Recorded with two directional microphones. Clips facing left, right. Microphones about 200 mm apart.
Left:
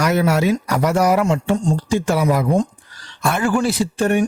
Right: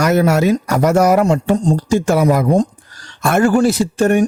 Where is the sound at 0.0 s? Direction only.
45° right (ahead or behind).